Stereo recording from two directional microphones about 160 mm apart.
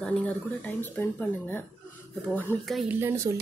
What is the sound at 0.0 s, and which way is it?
Speech, 10° left (ahead or behind).